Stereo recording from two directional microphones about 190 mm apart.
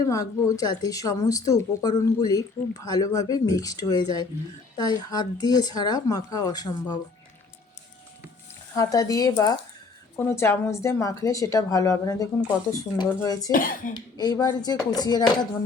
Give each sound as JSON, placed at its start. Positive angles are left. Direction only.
{"t": 0.0, "sound": "speech", "side_deg": 15}
{"t": 8.7, "sound": "a woman's voice", "side_deg": 20}
{"t": 13.5, "sound": "speech", "side_deg": 45}
{"t": 13.9, "sound": "speech", "side_deg": 20}